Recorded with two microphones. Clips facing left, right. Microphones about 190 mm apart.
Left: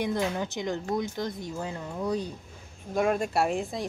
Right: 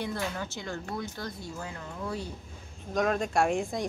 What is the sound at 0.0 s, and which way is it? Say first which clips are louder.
Speech: left 5 dB; 20° left (ahead or behind).